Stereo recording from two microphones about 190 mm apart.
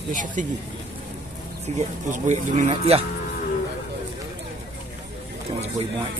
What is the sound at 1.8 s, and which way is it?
Speech, 40° right (ahead or behind).